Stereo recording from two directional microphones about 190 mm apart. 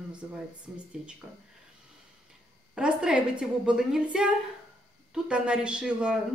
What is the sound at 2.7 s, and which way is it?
A woman's voice, 5° right (ahead or behind).